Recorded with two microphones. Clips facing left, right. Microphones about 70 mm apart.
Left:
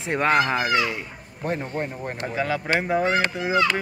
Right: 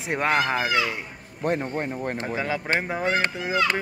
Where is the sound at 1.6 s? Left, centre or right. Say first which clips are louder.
Right 1 dB; right.